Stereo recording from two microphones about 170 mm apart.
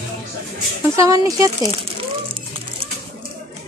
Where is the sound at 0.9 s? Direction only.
20° right (ahead or behind).